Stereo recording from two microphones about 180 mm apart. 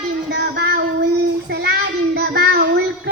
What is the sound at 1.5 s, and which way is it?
Child singing, 65° right (ahead or behind).